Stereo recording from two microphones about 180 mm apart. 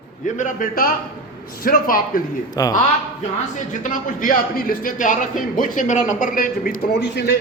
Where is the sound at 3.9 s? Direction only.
50° left (ahead or behind).